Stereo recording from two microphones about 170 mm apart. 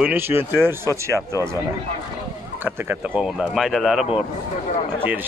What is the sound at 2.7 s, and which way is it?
Speech, 5° right (ahead or behind).